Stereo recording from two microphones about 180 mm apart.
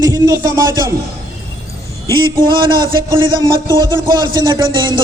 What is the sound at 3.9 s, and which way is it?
Speech, 25° right (ahead or behind).